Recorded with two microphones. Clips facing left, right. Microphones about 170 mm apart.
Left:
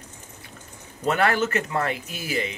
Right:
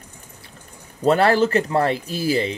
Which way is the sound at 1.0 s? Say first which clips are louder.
Right 6 dB; 35° right (ahead or behind).